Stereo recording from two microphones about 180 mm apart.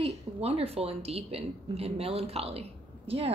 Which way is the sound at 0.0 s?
35° right (ahead or behind).